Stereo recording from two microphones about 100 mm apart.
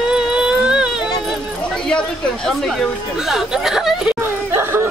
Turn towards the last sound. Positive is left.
turn(degrees=-25)  # may be behind; listen again after turning